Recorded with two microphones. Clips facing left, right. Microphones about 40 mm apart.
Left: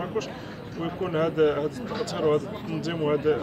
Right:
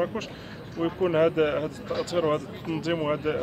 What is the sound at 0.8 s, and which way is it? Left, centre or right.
Speech, centre.